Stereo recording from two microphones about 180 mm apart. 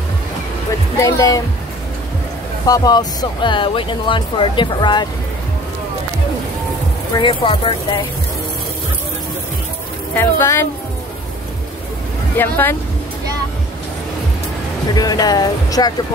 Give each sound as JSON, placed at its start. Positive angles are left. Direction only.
{"t": 0.9, "sound": "speech", "side_deg": 15}
{"t": 2.6, "sound": "speech", "side_deg": 20}
{"t": 7.2, "sound": "speech", "side_deg": 25}
{"t": 10.1, "sound": "speech", "side_deg": 15}
{"t": 12.4, "sound": "speech", "side_deg": 10}
{"t": 15.0, "sound": "speech", "side_deg": 20}